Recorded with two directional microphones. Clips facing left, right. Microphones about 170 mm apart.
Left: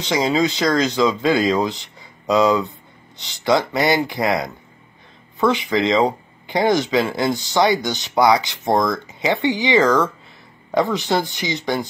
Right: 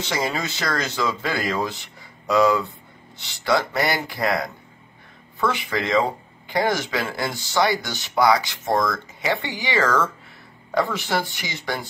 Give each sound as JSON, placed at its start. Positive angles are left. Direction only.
{"t": 0.0, "sound": "speech", "side_deg": 20}